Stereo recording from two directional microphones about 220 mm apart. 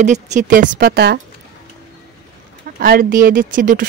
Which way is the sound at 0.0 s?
35° right (ahead or behind).